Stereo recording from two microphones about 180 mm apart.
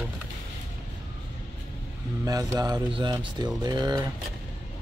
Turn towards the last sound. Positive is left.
turn(degrees=-25)  # may be behind; listen again after turning